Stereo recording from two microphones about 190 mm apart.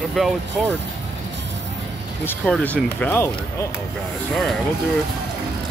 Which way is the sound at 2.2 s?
5° left (ahead or behind).